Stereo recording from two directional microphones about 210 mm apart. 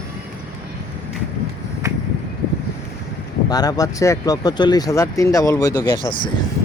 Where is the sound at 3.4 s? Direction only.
20° left (ahead or behind).